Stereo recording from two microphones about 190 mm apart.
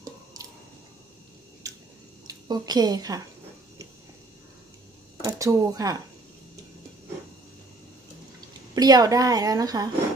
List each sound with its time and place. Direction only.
0.0 s squish: 20° right (ahead or behind)
2.2 s a woman's voice: 20° right (ahead or behind)
5.2 s speech: 15° right (ahead or behind)
8.7 s a woman's voice: 20° right (ahead or behind)